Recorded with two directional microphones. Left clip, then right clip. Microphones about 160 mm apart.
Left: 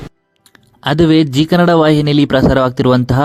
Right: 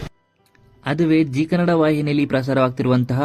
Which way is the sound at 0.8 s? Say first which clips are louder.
Left 7 dB; 40° left (ahead or behind).